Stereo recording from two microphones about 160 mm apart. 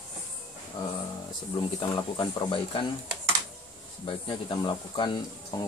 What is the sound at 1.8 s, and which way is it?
Speech, 30° left (ahead or behind).